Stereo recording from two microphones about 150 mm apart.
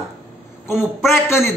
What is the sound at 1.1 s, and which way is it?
Speech, 15° left (ahead or behind).